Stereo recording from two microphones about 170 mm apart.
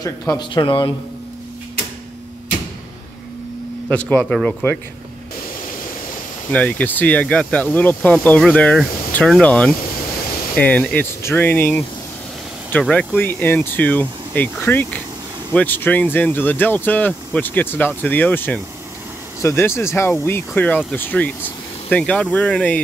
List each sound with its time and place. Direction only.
0.0 s speech: 20° left (ahead or behind)
3.9 s speech: 10° left (ahead or behind)
6.5 s speech: 10° left (ahead or behind)